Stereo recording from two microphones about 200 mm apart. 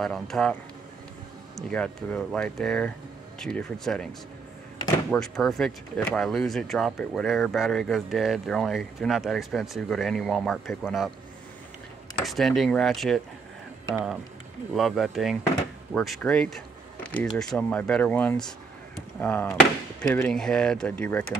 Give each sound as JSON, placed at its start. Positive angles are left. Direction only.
{"t": 0.0, "sound": "speech", "side_deg": 0}
{"t": 1.7, "sound": "speech", "side_deg": 5}
{"t": 5.1, "sound": "speech", "side_deg": 0}
{"t": 12.3, "sound": "speech", "side_deg": 0}
{"t": 14.7, "sound": "speech", "side_deg": 0}